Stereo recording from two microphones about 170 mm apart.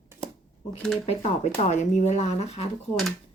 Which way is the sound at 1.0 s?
40° left (ahead or behind).